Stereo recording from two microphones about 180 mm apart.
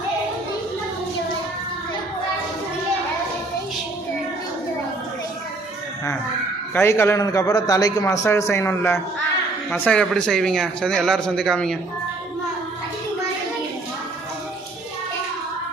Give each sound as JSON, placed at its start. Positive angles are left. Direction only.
{"t": 6.7, "sound": "a man's voice", "side_deg": 15}